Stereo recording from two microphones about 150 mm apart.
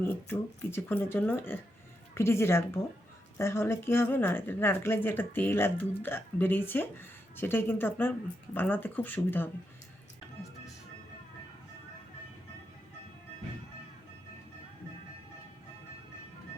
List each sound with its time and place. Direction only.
0.0 s a woman's voice: 15° left (ahead or behind)